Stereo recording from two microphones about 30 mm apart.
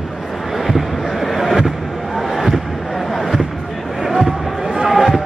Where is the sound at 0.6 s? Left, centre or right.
Centre.